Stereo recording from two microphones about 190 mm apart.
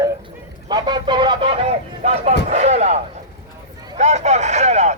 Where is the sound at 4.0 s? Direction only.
35° right (ahead or behind).